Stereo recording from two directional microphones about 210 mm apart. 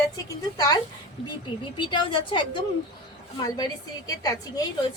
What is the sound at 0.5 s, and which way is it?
A woman's voice, 20° left (ahead or behind).